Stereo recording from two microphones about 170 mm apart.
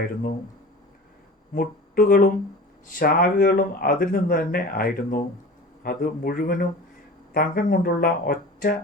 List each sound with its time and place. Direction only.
1.5 s speech: 55° left (ahead or behind)